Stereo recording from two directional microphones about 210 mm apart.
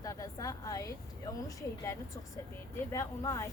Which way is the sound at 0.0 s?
15° left (ahead or behind).